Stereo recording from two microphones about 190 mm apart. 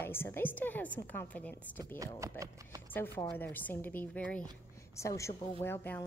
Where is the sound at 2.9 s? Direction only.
10° left (ahead or behind).